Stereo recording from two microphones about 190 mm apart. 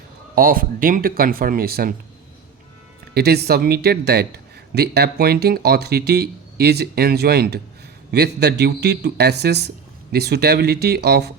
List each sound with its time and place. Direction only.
0.3 s speech: 50° right (ahead or behind)
3.2 s speech: 60° right (ahead or behind)